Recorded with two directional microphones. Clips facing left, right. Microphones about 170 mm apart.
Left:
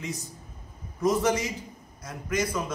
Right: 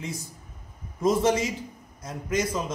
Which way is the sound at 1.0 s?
25° right (ahead or behind).